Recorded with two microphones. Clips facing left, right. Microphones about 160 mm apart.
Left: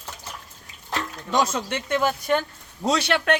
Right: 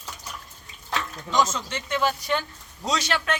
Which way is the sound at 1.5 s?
55° left (ahead or behind).